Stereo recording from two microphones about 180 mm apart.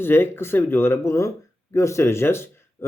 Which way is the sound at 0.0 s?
10° left (ahead or behind).